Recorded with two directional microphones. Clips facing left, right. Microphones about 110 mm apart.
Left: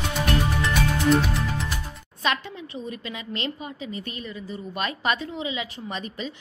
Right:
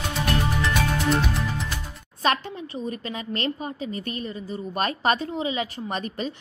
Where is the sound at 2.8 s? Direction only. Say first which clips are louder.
Right 3 dB; 40° right (ahead or behind).